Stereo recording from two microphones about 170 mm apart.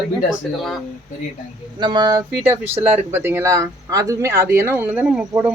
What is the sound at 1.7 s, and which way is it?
Speech, 25° right (ahead or behind).